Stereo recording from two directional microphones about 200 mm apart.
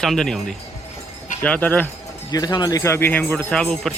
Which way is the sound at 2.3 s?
20° left (ahead or behind).